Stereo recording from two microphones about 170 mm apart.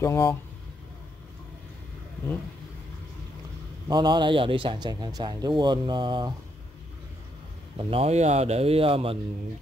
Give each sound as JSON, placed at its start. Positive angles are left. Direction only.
{"t": 0.0, "sound": "speech", "side_deg": 15}
{"t": 3.9, "sound": "speech", "side_deg": -25}
{"t": 7.7, "sound": "speech", "side_deg": -35}